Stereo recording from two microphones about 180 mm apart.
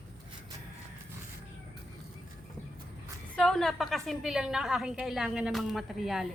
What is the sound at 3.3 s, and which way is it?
A woman's voice, 5° left (ahead or behind).